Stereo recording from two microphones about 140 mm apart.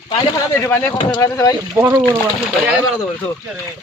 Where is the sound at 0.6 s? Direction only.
15° left (ahead or behind).